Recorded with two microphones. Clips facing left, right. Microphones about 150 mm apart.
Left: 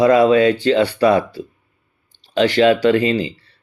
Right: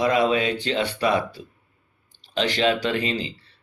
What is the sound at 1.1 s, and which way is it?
Speech, 50° left (ahead or behind).